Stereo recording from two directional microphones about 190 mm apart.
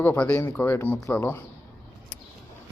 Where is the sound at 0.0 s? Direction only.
10° left (ahead or behind).